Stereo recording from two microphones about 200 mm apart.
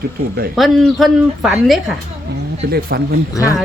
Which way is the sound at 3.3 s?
15° left (ahead or behind).